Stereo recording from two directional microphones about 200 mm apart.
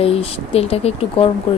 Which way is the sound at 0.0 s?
30° left (ahead or behind).